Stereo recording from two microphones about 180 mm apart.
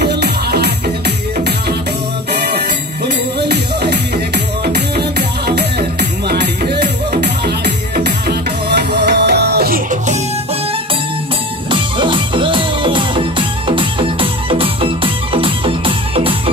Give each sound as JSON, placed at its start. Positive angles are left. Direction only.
{"t": 0.0, "sound": "music", "side_deg": -65}
{"t": 2.3, "sound": "music", "side_deg": -65}
{"t": 11.7, "sound": "music", "side_deg": -25}